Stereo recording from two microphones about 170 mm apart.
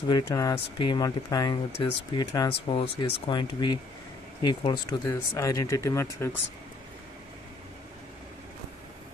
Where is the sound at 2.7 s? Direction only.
35° left (ahead or behind); by 6.4 s 15° left (ahead or behind).